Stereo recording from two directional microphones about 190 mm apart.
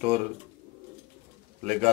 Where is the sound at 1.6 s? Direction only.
35° right (ahead or behind).